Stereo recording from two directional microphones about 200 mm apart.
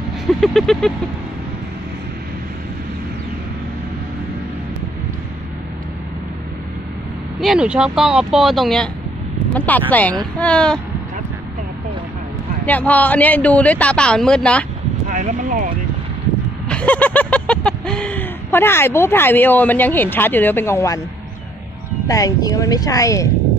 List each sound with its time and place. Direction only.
0.4 s speech: centre (ahead or behind)
7.3 s speech: 5° right (ahead or behind)
12.6 s speech: 10° left (ahead or behind)
15.0 s speech: 40° right (ahead or behind)
16.6 s a sound: 5° left (ahead or behind)
22.0 s speech: 15° left (ahead or behind)